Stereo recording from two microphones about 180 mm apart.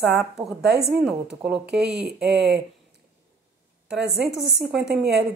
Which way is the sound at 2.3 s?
65° right (ahead or behind).